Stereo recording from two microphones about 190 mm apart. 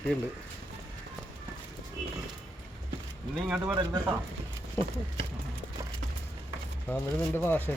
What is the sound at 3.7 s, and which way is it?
Speech, 20° right (ahead or behind).